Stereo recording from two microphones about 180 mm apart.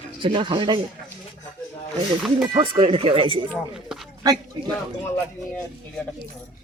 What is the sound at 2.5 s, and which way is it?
Speech, 30° right (ahead or behind).